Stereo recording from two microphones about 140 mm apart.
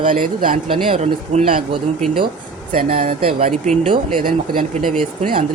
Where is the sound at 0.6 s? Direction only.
40° right (ahead or behind).